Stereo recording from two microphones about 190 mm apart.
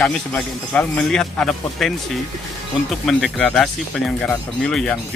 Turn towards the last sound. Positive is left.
turn(degrees=5)  # may be behind; listen again after turning